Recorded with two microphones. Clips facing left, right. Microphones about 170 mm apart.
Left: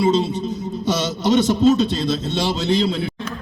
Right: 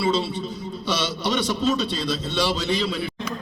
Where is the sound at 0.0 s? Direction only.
45° left (ahead or behind).